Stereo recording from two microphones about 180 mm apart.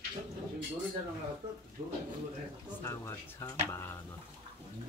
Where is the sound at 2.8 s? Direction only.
15° left (ahead or behind).